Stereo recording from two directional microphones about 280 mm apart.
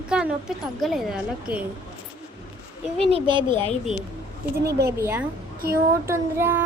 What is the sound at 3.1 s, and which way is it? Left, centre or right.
Speech, centre.